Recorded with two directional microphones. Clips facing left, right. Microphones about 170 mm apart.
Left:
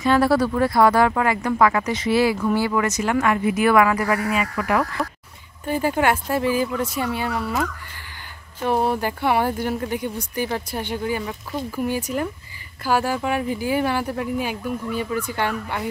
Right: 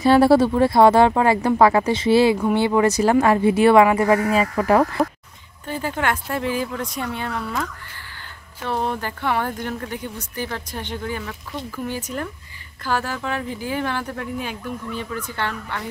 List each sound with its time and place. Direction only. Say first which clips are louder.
0.0 s speech: right 4 dB; 30° right (ahead or behind)
5.7 s speech: left 4 dB; 10° left (ahead or behind)